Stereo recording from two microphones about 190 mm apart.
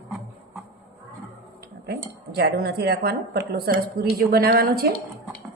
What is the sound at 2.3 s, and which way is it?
A woman's voice, 55° right (ahead or behind).